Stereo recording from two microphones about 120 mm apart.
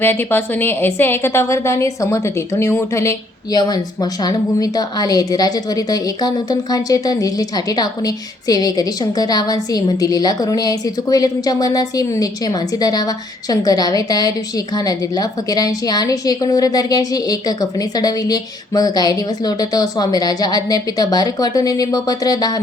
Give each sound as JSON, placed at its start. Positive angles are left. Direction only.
{"t": 0.0, "sound": "a woman's voice", "side_deg": 20}